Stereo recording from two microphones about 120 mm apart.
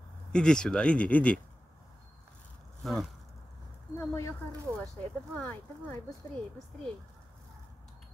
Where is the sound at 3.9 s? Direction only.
20° left (ahead or behind).